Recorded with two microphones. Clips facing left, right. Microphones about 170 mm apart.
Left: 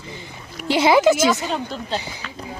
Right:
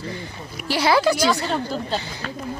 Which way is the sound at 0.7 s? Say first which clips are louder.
Left 4 dB; 20° left (ahead or behind).